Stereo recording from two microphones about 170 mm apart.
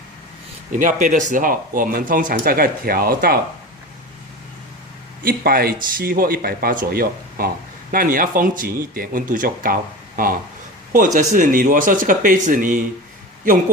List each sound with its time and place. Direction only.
0.7 s speech: 50° right (ahead or behind)
5.2 s speech: 60° right (ahead or behind)